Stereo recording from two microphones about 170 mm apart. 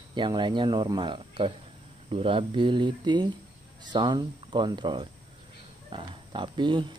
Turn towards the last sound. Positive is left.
turn(degrees=-30)  # may be behind; listen again after turning